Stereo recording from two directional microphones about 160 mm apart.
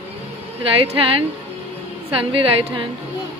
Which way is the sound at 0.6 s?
35° right (ahead or behind).